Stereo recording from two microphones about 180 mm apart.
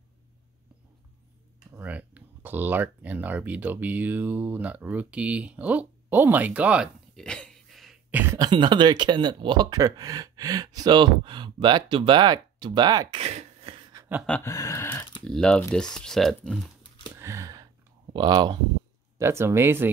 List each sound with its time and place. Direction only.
1.8 s speech: 10° right (ahead or behind)
7.2 s throat clearing: 5° left (ahead or behind)
8.4 s speech: 25° right (ahead or behind)
13.2 s a sound: 35° right (ahead or behind)
14.4 s a sound: 20° left (ahead or behind)
15.2 s speech: 5° left (ahead or behind)
17.1 s gasp: 15° right (ahead or behind)
18.1 s speech: 25° right (ahead or behind)